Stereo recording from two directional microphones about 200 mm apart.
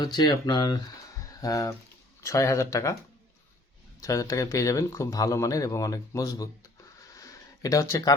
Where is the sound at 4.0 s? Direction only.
15° left (ahead or behind).